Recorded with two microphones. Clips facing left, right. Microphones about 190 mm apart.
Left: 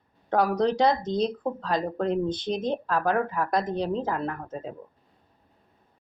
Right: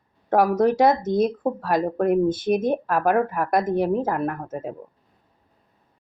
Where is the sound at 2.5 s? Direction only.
50° right (ahead or behind).